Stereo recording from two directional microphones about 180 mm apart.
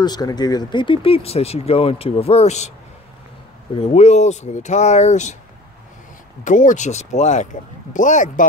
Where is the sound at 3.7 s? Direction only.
35° left (ahead or behind).